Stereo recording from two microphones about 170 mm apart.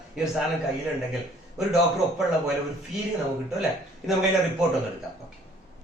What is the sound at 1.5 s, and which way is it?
Speech, centre (ahead or behind).